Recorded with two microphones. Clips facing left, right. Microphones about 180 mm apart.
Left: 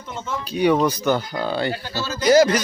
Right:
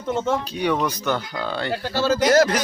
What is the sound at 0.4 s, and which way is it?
Speech, 5° left (ahead or behind).